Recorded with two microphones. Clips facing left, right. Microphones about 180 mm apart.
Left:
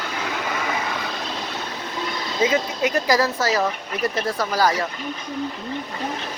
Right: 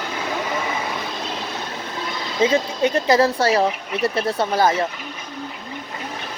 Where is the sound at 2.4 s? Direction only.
30° right (ahead or behind).